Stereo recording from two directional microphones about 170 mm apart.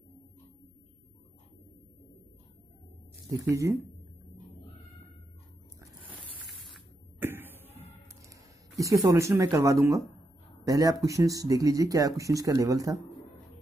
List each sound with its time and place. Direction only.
3.3 s speech: 20° right (ahead or behind)
6.3 s a sound: 10° right (ahead or behind)
8.2 s speech: 20° right (ahead or behind)